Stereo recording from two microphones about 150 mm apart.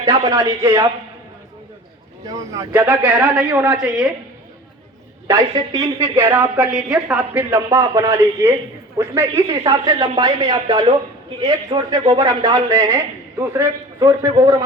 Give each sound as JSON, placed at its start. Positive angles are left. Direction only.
{"t": 0.0, "sound": "a man's voice", "side_deg": -25}
{"t": 2.2, "sound": "a man's voice", "side_deg": -20}
{"t": 2.8, "sound": "a woman's voice", "side_deg": -10}
{"t": 5.3, "sound": "a woman's voice", "side_deg": -25}
{"t": 7.7, "sound": "a man's voice", "side_deg": -25}